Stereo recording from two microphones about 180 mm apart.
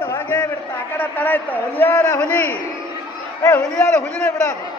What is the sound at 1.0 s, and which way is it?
A man's voice, 10° left (ahead or behind).